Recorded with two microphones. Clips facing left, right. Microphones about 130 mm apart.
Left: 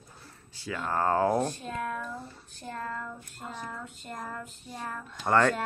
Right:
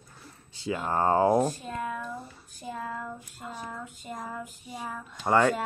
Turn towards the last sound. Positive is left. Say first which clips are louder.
# right 1 dB
turn(degrees=-10)  # may be behind; listen again after turning